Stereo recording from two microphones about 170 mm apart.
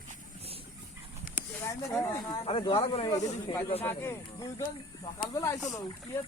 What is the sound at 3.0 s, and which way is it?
Speech, 20° left (ahead or behind).